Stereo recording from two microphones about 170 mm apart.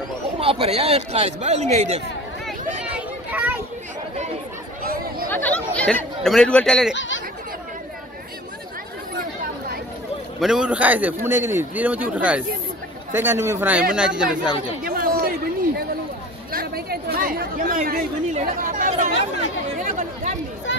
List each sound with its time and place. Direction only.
0.4 s a man's voice: 35° right (ahead or behind)
2.4 s a sound: 5° right (ahead or behind)
5.3 s speech: 10° left (ahead or behind)
6.9 s speech: 90° left
10.4 s speech: 5° right (ahead or behind)
14.8 s chatter: 55° right (ahead or behind)
16.5 s speech: 65° right (ahead or behind); by 19.2 s 45° right (ahead or behind)
19.8 s chatter: 50° right (ahead or behind)